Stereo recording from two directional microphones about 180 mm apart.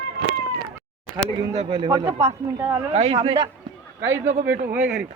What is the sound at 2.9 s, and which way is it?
Speech, 35° right (ahead or behind).